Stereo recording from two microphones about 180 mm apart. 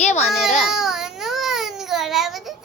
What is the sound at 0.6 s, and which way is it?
Baby cry, centre (ahead or behind).